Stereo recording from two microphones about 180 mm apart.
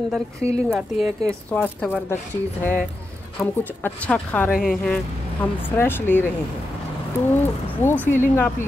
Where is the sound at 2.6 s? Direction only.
10° left (ahead or behind).